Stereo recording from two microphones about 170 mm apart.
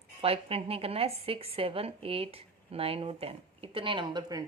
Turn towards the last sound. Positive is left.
turn(degrees=-25)  # may be behind; listen again after turning